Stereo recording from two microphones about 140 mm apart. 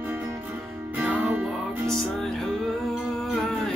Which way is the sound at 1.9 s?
5° left (ahead or behind).